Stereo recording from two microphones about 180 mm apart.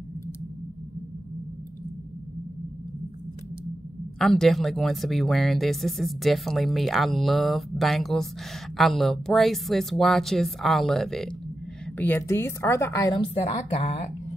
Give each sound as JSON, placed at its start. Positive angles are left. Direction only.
{"t": 4.2, "sound": "speech", "side_deg": 0}
{"t": 12.0, "sound": "a woman's voice", "side_deg": 15}
{"t": 13.3, "sound": "a woman's voice", "side_deg": 35}